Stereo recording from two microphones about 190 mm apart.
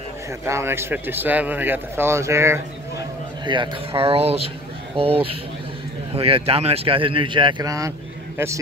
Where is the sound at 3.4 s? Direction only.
25° right (ahead or behind).